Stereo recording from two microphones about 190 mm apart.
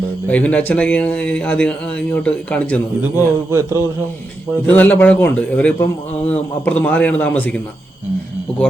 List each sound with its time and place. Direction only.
0.3 s a man's voice: 5° left (ahead or behind)
3.0 s a man's voice: 10° right (ahead or behind)
4.6 s a man's voice: 10° left (ahead or behind)